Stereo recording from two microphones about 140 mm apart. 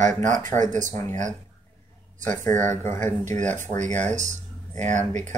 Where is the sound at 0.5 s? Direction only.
65° right (ahead or behind).